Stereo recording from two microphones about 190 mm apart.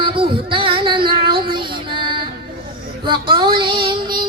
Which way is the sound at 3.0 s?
25° right (ahead or behind).